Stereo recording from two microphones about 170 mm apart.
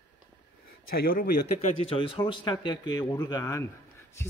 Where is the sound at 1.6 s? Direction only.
35° left (ahead or behind).